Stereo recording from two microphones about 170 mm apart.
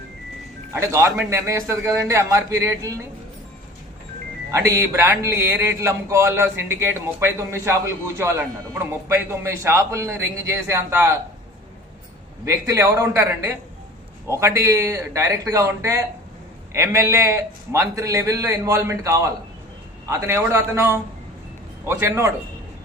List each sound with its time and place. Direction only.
0.9 s a man's voice: 15° right (ahead or behind)
4.5 s a man's voice: 15° right (ahead or behind)
12.5 s a man's voice: 20° right (ahead or behind)